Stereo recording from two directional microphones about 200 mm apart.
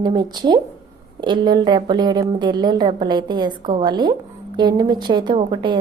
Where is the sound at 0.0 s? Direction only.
20° right (ahead or behind).